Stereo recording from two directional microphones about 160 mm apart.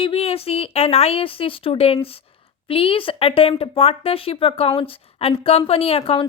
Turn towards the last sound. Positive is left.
turn(degrees=35)  # may be behind; listen again after turning